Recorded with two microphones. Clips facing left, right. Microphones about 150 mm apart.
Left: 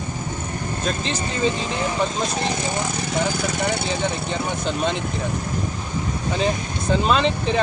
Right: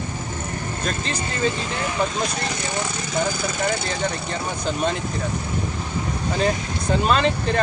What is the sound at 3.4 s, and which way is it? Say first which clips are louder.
Speech: left 1 dB; centre (ahead or behind).